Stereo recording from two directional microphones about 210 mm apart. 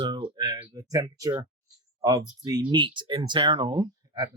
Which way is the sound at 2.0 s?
15° right (ahead or behind).